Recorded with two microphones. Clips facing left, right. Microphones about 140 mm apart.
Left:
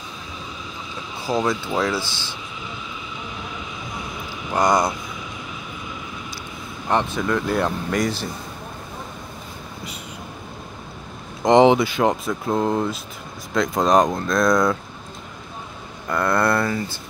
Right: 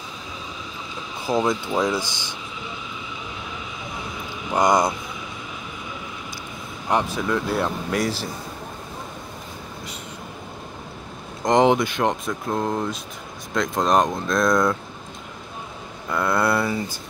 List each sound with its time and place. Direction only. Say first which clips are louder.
1.3 s speech: even; 15° right (ahead or behind)
4.6 s speech: even; 20° right (ahead or behind)
6.9 s speech: left 1 dB; 10° right (ahead or behind)
11.4 s speech: left 3 dB; centre (ahead or behind)
16.1 s speech: left 1 dB; 5° right (ahead or behind)